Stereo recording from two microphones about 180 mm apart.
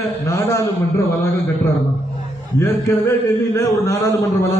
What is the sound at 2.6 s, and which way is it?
A man's voice, 20° left (ahead or behind).